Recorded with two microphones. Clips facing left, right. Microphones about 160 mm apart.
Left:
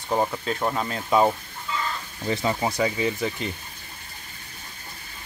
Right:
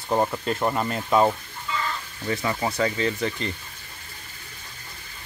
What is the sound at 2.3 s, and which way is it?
Speech, 25° left (ahead or behind).